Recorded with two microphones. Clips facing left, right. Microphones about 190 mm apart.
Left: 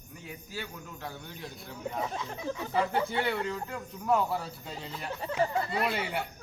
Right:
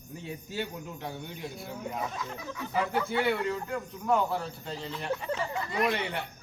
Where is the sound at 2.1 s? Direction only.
30° left (ahead or behind).